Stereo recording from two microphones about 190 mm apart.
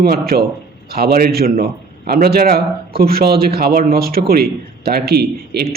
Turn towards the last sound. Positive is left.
turn(degrees=-55)  # may be behind; listen again after turning